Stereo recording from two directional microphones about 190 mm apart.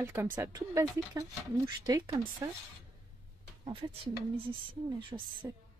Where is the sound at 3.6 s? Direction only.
30° right (ahead or behind).